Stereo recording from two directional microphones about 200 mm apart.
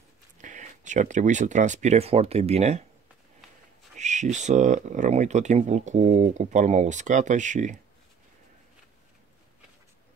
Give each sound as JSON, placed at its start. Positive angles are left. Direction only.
{"t": 0.4, "sound": "speech", "side_deg": -40}
{"t": 4.0, "sound": "speech", "side_deg": -35}